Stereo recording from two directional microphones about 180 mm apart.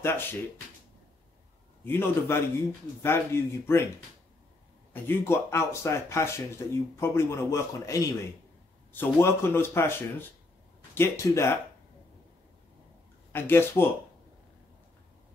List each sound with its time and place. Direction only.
0.0 s speech: 10° left (ahead or behind)
1.9 s speech: 15° left (ahead or behind)
4.9 s speech: 15° left (ahead or behind)
13.3 s speech: 10° left (ahead or behind)